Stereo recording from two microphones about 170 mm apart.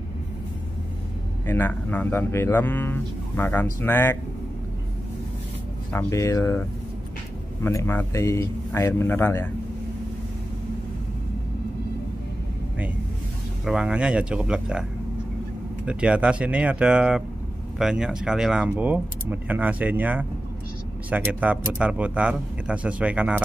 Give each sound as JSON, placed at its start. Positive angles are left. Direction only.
{"t": 1.5, "sound": "speech", "side_deg": 10}
{"t": 5.9, "sound": "speech", "side_deg": 20}
{"t": 7.6, "sound": "speech", "side_deg": 15}
{"t": 13.7, "sound": "speech", "side_deg": -5}